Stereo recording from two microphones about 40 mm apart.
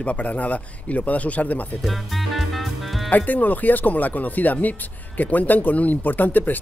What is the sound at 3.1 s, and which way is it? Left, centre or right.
Speech, left.